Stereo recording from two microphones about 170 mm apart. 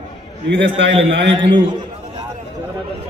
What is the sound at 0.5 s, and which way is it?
Speech, 90° right.